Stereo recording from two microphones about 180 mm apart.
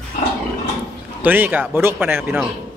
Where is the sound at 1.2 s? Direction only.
10° right (ahead or behind).